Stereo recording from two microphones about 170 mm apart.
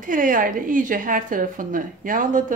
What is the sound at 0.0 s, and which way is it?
A woman's voice, 50° right (ahead or behind).